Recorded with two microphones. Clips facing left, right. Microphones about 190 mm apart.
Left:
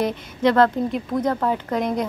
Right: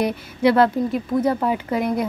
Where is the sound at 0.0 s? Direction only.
10° right (ahead or behind).